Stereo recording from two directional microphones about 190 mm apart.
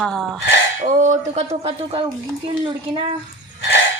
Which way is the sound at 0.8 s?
40° right (ahead or behind).